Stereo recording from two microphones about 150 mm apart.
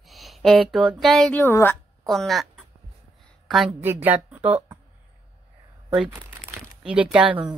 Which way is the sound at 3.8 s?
15° right (ahead or behind).